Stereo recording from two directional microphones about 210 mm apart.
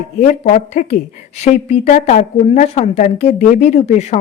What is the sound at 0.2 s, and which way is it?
A woman's voice, 35° left (ahead or behind).